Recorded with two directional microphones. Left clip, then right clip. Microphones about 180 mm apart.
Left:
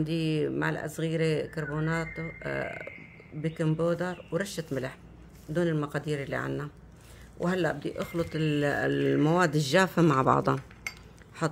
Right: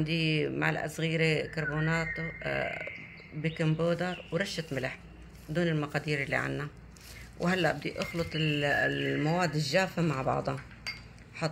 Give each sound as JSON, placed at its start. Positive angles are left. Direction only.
{"t": 0.0, "sound": "speech", "side_deg": 30}